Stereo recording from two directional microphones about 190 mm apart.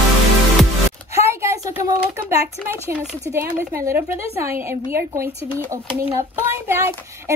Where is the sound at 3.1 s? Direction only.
15° right (ahead or behind).